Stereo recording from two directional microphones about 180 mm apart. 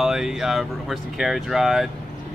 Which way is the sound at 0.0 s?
5° right (ahead or behind).